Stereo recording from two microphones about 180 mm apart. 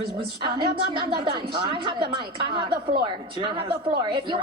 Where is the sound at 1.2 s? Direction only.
30° right (ahead or behind).